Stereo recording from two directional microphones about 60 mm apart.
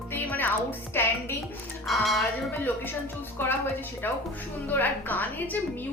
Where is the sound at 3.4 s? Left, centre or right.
Left.